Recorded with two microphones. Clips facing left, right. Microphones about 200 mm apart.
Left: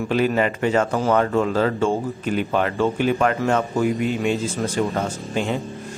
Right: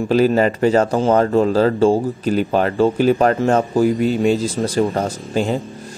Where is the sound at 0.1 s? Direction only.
35° right (ahead or behind).